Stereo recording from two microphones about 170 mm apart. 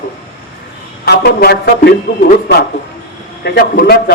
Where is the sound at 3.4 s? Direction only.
75° left (ahead or behind).